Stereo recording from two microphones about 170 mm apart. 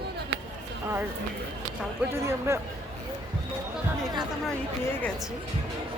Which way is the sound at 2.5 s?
15° right (ahead or behind).